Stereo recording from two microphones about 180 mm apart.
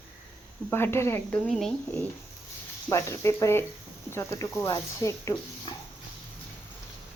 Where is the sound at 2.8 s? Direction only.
15° left (ahead or behind).